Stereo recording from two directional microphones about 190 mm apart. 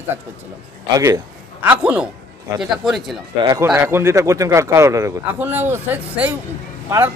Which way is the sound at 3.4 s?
20° right (ahead or behind).